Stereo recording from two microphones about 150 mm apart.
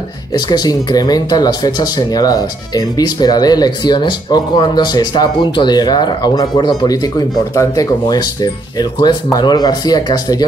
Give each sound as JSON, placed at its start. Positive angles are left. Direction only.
{"t": 0.3, "sound": "speech", "side_deg": 25}